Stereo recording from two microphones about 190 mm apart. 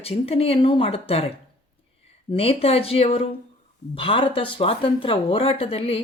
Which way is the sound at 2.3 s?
30° left (ahead or behind).